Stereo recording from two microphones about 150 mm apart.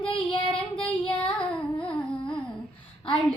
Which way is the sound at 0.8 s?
5° left (ahead or behind).